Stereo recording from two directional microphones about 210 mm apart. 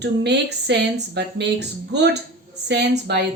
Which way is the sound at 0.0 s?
55° right (ahead or behind).